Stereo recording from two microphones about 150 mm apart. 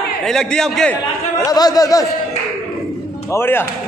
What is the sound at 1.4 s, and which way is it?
Speech, 25° left (ahead or behind).